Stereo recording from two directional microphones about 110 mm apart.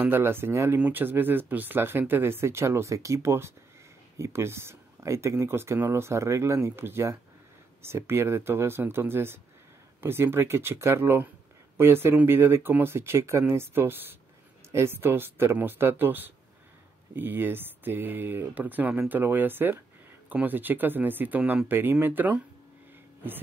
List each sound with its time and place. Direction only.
0.0 s speech: 20° right (ahead or behind)